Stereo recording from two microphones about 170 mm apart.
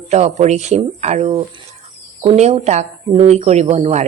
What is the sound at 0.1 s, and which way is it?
Speech, 40° right (ahead or behind).